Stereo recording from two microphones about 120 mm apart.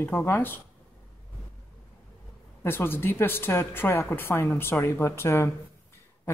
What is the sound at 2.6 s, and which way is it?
Speech, 20° left (ahead or behind).